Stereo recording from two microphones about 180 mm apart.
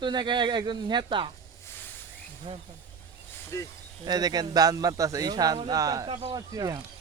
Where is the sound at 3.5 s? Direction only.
15° left (ahead or behind).